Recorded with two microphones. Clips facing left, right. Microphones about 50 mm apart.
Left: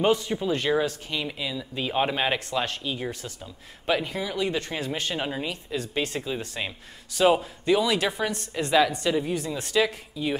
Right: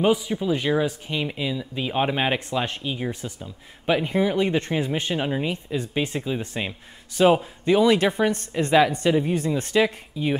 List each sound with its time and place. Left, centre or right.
0.0 s speech: centre
0.8 s speech: centre
5.1 s speech: centre
7.2 s speech: right